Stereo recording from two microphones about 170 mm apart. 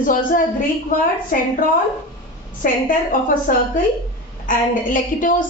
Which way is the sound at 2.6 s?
55° left (ahead or behind).